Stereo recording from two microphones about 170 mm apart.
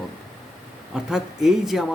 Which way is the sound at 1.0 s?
Centre (ahead or behind).